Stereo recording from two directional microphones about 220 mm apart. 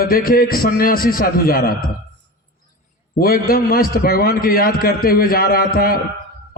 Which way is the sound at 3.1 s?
40° left (ahead or behind).